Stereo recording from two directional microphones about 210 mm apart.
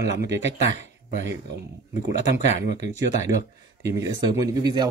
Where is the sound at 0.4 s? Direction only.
30° left (ahead or behind).